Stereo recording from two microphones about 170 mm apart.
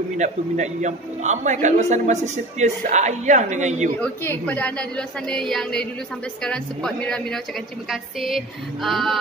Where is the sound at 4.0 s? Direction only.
10° left (ahead or behind).